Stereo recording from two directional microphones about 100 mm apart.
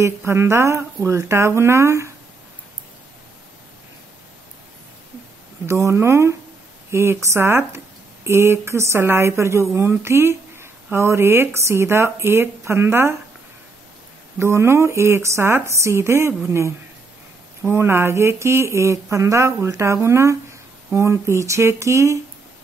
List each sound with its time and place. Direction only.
0.0 s speech: 25° right (ahead or behind)
5.7 s speech: 30° right (ahead or behind)
14.4 s speech: 25° right (ahead or behind)